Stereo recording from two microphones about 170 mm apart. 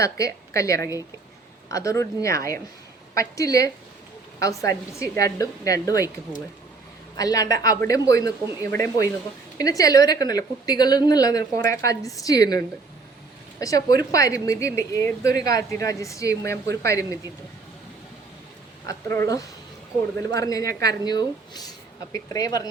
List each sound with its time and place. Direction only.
0.0 s a woman's voice: 20° left (ahead or behind)
7.2 s a woman's voice: 20° left (ahead or behind)
18.9 s a woman's voice: 15° left (ahead or behind)